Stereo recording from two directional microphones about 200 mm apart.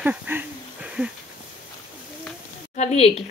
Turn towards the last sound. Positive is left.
turn(degrees=30)  # may be behind; listen again after turning